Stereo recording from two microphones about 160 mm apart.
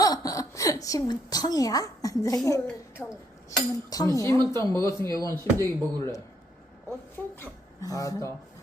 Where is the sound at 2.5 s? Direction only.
15° left (ahead or behind).